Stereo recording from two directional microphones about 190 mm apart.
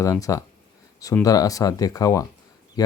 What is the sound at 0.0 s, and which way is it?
Speech, 15° left (ahead or behind).